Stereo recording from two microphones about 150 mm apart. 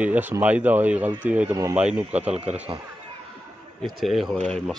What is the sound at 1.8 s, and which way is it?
Speech, 10° right (ahead or behind).